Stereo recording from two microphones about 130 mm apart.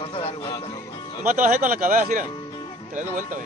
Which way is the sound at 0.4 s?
30° left (ahead or behind).